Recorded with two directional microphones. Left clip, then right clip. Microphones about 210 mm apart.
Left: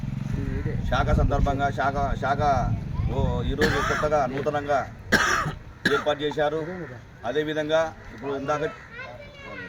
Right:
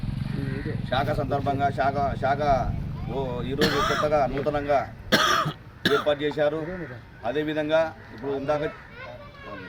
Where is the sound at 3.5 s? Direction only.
30° right (ahead or behind).